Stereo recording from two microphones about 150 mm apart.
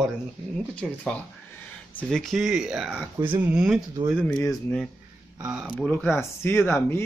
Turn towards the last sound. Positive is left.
turn(degrees=15)  # may be behind; listen again after turning